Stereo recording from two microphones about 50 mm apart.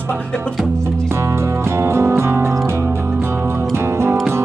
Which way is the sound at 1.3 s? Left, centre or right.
Right.